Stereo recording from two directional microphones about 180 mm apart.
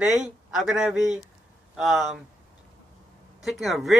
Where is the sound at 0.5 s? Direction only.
5° right (ahead or behind).